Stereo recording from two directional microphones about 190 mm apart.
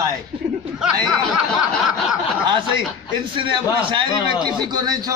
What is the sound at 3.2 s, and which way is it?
A man's voice, 25° right (ahead or behind).